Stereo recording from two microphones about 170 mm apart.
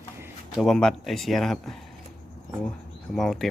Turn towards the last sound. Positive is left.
turn(degrees=0)  # may be behind; listen again after turning